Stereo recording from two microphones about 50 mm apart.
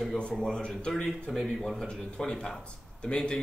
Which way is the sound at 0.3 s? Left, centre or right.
Centre.